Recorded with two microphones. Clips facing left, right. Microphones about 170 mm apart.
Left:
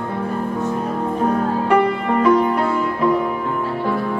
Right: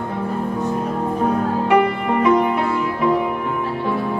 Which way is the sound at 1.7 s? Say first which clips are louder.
Even; 5° right (ahead or behind).